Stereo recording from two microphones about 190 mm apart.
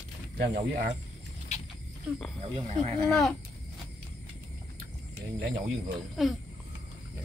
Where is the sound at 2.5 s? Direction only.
35° right (ahead or behind).